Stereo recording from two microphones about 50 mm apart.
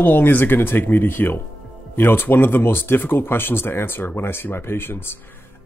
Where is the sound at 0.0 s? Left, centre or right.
Left.